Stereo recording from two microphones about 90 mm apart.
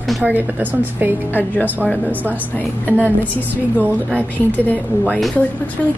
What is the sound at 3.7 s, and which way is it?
Speech, 20° right (ahead or behind).